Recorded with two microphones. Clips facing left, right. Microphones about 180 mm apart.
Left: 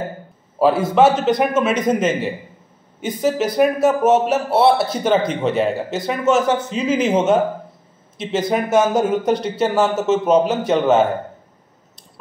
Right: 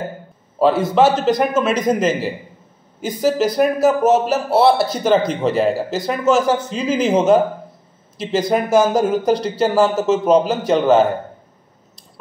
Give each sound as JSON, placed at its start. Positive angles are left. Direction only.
{"t": 0.6, "sound": "speech", "side_deg": 5}
{"t": 2.0, "sound": "a man's voice", "side_deg": -30}
{"t": 3.0, "sound": "speech", "side_deg": 5}